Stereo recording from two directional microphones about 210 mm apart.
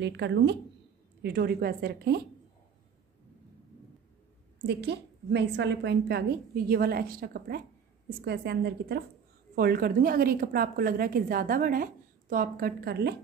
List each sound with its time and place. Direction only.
0.0 s a woman's voice: 55° right (ahead or behind)
4.6 s a woman's voice: 50° right (ahead or behind)